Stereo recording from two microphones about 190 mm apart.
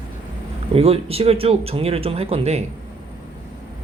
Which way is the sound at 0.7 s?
30° right (ahead or behind).